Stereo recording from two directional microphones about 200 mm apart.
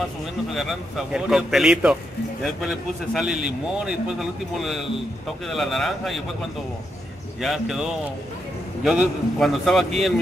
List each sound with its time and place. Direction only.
0.6 s a man's voice: centre (ahead or behind)
7.3 s a man's voice: centre (ahead or behind)